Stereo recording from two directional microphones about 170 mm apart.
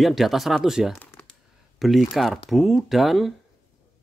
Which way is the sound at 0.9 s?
10° left (ahead or behind).